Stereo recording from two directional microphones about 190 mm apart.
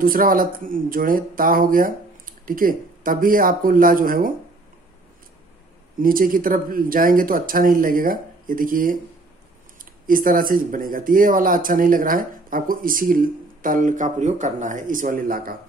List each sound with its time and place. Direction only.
0.0 s speech: 50° right (ahead or behind)
5.9 s speech: 50° right (ahead or behind)
10.0 s speech: 45° right (ahead or behind)